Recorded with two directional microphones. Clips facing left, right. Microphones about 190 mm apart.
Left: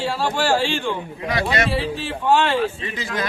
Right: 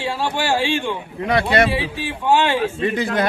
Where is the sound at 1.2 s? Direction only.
55° right (ahead or behind).